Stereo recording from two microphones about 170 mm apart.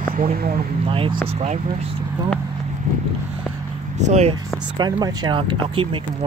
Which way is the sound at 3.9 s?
40° right (ahead or behind).